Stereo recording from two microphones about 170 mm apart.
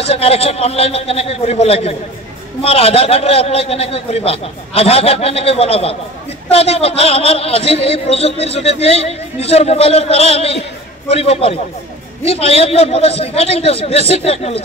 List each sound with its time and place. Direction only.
0.0 s speech: 35° left (ahead or behind)